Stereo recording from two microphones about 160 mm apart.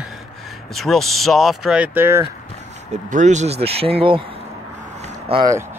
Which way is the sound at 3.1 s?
45° right (ahead or behind).